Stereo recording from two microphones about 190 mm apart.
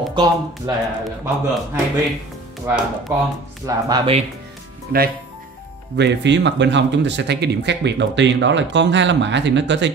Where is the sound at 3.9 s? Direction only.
30° right (ahead or behind).